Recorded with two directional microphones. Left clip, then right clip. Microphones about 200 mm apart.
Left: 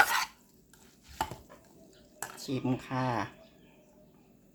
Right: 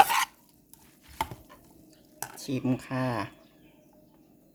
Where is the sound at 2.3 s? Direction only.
25° right (ahead or behind).